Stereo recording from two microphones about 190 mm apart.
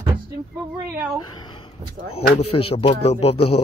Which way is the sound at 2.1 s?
30° left (ahead or behind).